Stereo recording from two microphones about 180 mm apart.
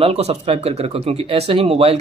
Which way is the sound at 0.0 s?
35° right (ahead or behind).